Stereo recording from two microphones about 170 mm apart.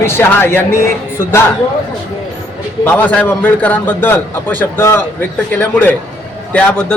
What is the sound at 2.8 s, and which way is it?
A man's voice, 10° left (ahead or behind).